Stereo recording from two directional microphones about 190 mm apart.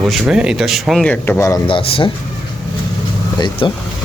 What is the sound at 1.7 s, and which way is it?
Speech, 30° left (ahead or behind).